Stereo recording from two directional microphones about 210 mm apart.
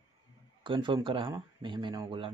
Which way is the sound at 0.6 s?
25° right (ahead or behind).